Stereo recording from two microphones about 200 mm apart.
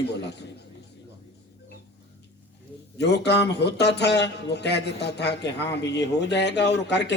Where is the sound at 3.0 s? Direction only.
60° left (ahead or behind).